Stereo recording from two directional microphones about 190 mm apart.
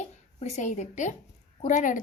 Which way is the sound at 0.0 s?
35° left (ahead or behind).